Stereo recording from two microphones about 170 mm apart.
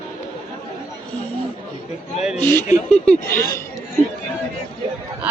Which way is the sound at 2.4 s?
15° left (ahead or behind).